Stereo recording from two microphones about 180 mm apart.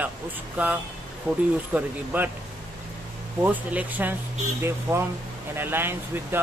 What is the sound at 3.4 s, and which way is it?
Speech, 10° right (ahead or behind).